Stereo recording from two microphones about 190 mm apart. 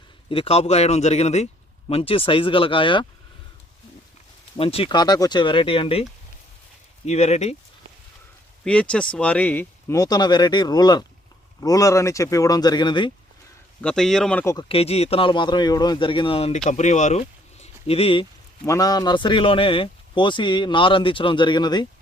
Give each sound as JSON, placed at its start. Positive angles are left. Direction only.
{"t": 0.3, "sound": "speech", "side_deg": 30}
{"t": 4.5, "sound": "speech", "side_deg": 30}
{"t": 8.6, "sound": "speech", "side_deg": 5}
{"t": 13.8, "sound": "speech", "side_deg": 0}
{"t": 14.5, "sound": "speech", "side_deg": 30}
{"t": 18.6, "sound": "speech", "side_deg": 15}